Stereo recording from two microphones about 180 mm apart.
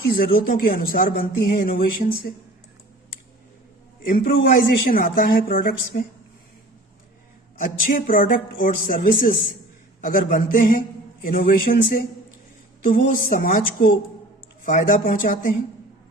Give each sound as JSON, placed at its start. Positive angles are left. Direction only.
{"t": 0.3, "sound": "a woman's voice", "side_deg": 55}
{"t": 4.0, "sound": "a woman's voice", "side_deg": 50}
{"t": 7.6, "sound": "a woman's voice", "side_deg": 50}